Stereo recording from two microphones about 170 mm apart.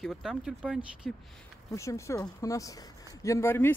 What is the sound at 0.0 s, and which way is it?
Speech, centre (ahead or behind).